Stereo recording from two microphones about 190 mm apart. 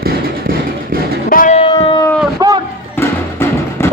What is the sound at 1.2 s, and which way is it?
Music, 45° left (ahead or behind).